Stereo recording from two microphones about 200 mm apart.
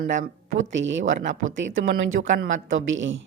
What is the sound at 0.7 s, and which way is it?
Speech, 65° right (ahead or behind).